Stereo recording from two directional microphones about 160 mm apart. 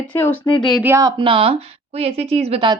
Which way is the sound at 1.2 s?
35° right (ahead or behind).